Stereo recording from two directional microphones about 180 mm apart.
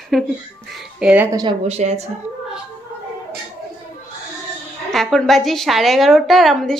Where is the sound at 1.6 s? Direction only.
35° right (ahead or behind).